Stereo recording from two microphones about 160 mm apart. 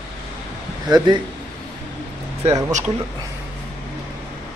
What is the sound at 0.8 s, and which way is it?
Speech, 25° right (ahead or behind).